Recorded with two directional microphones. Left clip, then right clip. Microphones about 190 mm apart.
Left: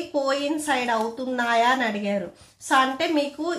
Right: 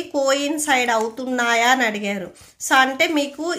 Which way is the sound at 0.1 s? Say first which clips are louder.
Right 5 dB; 35° right (ahead or behind).